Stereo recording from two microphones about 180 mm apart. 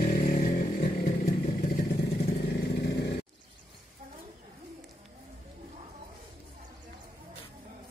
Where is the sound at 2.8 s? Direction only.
75° left (ahead or behind).